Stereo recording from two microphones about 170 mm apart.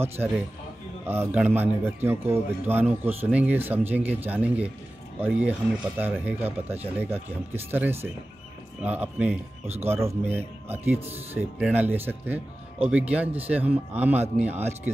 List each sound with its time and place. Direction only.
1.0 s a man's voice: 15° right (ahead or behind)